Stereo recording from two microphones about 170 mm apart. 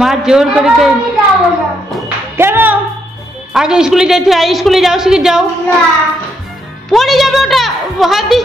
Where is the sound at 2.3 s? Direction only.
15° right (ahead or behind).